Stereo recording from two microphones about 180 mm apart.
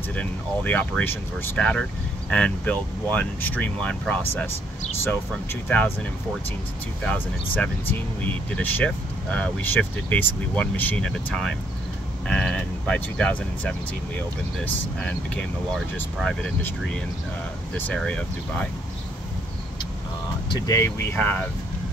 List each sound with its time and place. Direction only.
0.1 s speech: 10° left (ahead or behind)
7.0 s speech: 5° left (ahead or behind)
17.7 s speech: 10° left (ahead or behind)
20.4 s speech: 20° left (ahead or behind)